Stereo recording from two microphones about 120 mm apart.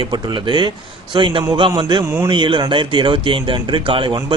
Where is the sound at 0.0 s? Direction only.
40° right (ahead or behind).